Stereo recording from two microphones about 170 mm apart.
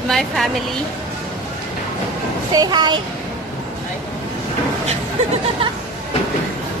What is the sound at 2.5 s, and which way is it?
Speech, 25° right (ahead or behind).